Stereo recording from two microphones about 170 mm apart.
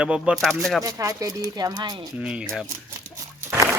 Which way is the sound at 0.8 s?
20° right (ahead or behind).